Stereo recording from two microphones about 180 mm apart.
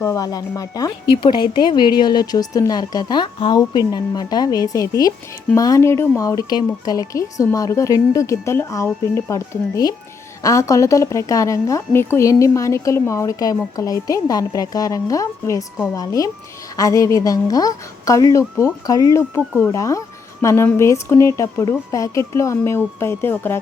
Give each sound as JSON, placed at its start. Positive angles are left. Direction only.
{"t": 0.0, "sound": "a woman's voice", "side_deg": 20}